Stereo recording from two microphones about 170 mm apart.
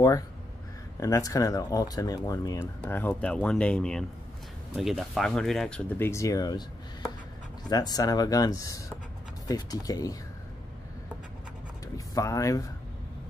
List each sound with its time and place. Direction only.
0.9 s speech: 20° left (ahead or behind)
12.1 s speech: 20° left (ahead or behind)